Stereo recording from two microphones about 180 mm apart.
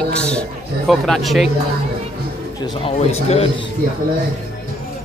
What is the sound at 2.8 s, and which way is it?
Speech, 35° left (ahead or behind).